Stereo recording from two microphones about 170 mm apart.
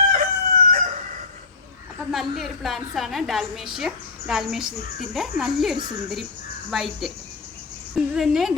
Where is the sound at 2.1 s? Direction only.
Centre (ahead or behind).